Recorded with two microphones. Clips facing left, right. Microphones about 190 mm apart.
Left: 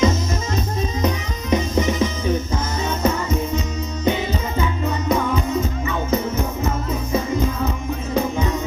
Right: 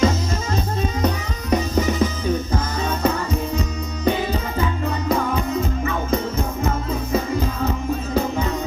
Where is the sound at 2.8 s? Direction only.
30° right (ahead or behind).